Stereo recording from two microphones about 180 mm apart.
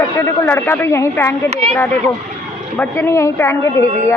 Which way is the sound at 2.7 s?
15° left (ahead or behind).